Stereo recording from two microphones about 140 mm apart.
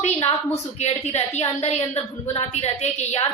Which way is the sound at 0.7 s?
50° left (ahead or behind).